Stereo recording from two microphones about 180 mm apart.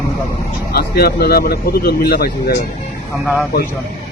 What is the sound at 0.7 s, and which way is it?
Speech, 60° left (ahead or behind).